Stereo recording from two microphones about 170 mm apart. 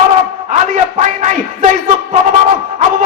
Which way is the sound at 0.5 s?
45° right (ahead or behind).